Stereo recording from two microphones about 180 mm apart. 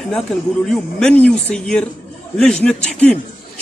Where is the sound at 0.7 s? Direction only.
5° left (ahead or behind).